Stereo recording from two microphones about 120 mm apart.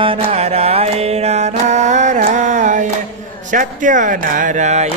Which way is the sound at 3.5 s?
90° right.